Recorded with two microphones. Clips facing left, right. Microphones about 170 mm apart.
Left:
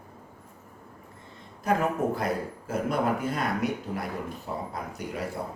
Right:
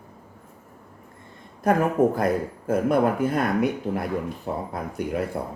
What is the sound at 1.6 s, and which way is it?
Speech, 50° right (ahead or behind).